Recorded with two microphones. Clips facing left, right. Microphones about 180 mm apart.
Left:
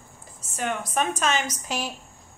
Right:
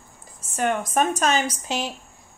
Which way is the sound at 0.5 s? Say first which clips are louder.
Right 5 dB; 50° right (ahead or behind).